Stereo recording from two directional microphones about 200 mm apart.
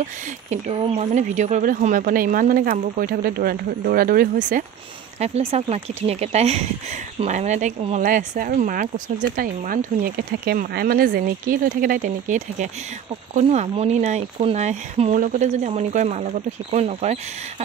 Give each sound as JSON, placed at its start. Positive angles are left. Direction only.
{"t": 0.0, "sound": "speech", "side_deg": -35}
{"t": 5.2, "sound": "speech", "side_deg": -30}